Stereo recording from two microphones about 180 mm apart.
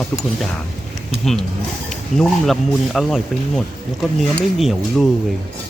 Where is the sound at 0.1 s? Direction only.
5° left (ahead or behind).